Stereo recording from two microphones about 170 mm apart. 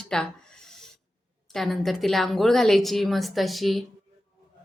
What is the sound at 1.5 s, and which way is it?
A woman's voice, centre (ahead or behind).